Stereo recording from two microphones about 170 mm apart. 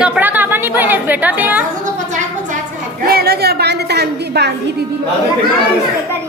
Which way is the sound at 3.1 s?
65° right (ahead or behind).